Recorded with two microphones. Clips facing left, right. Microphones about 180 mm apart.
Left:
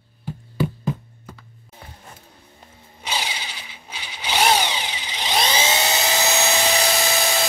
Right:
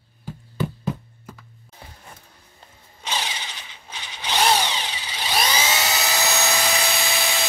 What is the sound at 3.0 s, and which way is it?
Tools, 15° left (ahead or behind).